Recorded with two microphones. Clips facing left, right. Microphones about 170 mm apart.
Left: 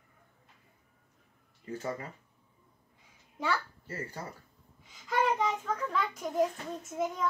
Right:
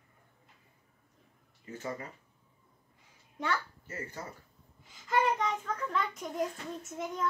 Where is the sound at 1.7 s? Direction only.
30° left (ahead or behind).